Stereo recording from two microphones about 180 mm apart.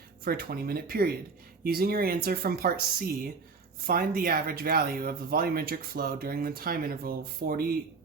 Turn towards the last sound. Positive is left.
turn(degrees=-55)  # may be behind; listen again after turning